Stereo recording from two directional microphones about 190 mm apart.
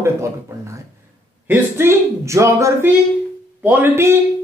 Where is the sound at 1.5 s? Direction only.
15° right (ahead or behind).